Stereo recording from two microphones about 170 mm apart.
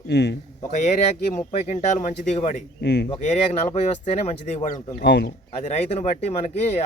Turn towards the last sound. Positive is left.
turn(degrees=40)  # may be behind; listen again after turning